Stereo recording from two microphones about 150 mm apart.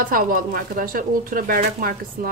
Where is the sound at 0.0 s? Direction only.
70° right (ahead or behind).